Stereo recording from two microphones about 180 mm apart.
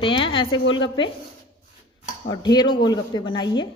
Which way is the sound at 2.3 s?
25° left (ahead or behind).